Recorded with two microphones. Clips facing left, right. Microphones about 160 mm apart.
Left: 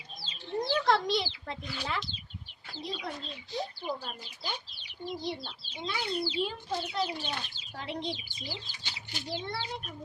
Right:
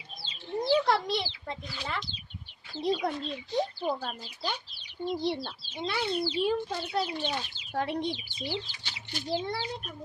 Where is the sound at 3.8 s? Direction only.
55° right (ahead or behind).